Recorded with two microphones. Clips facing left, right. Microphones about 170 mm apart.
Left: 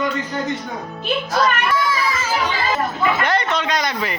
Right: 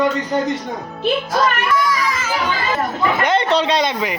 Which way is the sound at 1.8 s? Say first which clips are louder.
Right 1 dB; 30° left (ahead or behind).